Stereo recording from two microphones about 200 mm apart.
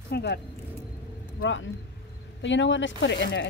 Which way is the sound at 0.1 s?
55° left (ahead or behind).